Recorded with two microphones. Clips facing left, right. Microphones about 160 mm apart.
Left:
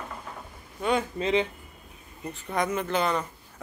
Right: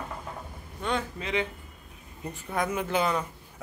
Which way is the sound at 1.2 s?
25° left (ahead or behind).